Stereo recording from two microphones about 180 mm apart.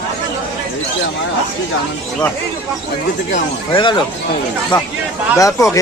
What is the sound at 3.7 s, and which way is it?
Speech, 25° left (ahead or behind).